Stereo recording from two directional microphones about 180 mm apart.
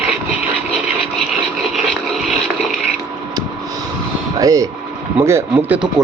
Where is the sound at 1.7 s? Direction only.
Centre (ahead or behind).